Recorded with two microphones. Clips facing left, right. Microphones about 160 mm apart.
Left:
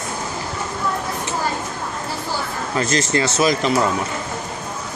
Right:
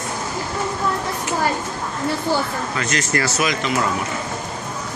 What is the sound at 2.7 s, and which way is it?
Speech, 30° left (ahead or behind).